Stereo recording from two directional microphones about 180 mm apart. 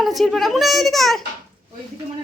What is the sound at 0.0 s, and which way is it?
A woman's voice, centre (ahead or behind).